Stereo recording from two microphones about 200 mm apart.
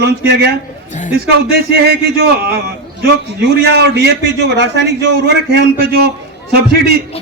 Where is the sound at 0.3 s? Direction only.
55° right (ahead or behind).